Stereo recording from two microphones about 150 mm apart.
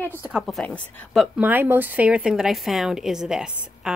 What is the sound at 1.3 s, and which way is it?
A woman's voice, 10° right (ahead or behind).